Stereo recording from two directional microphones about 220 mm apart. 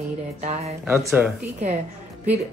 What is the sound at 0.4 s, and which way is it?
Speech, 30° right (ahead or behind).